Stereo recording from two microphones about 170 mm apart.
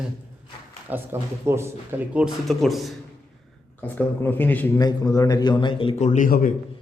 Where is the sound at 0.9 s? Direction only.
10° right (ahead or behind).